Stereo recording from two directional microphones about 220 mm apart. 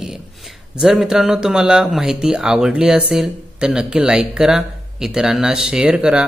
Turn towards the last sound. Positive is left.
turn(degrees=-5)  # may be behind; listen again after turning